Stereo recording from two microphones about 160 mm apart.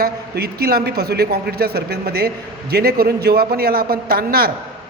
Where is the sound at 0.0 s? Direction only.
75° right (ahead or behind).